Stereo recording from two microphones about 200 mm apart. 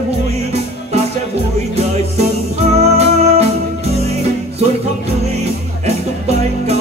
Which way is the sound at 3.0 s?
30° right (ahead or behind).